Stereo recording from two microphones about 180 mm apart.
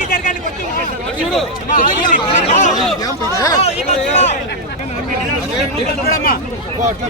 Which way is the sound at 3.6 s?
40° left (ahead or behind).